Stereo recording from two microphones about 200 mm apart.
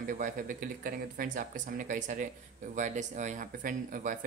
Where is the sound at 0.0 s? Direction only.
40° right (ahead or behind).